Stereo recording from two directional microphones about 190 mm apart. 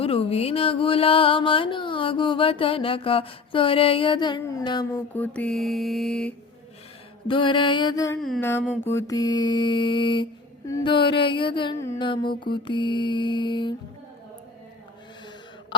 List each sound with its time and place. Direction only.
0.0 s music: 30° left (ahead or behind)
5.1 s mantra: 10° left (ahead or behind)
7.3 s music: 25° left (ahead or behind)
8.4 s mantra: 10° left (ahead or behind)
8.9 s music: 15° left (ahead or behind)